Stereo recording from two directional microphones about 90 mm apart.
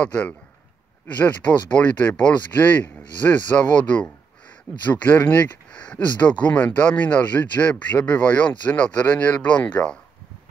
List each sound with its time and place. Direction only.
0.0 s speech: 15° left (ahead or behind)